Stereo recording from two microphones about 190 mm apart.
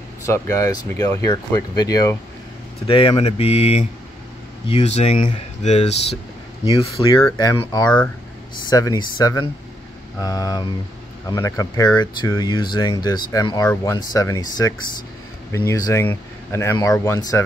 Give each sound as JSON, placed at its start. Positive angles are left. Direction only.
{"t": 0.2, "sound": "speech", "side_deg": 15}
{"t": 2.9, "sound": "speech", "side_deg": 30}
{"t": 6.6, "sound": "speech", "side_deg": 25}